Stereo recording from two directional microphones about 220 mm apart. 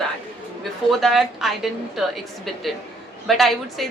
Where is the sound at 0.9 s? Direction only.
Centre (ahead or behind).